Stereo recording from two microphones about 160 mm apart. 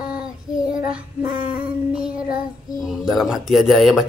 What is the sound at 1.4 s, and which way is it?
Child singing, 65° left (ahead or behind).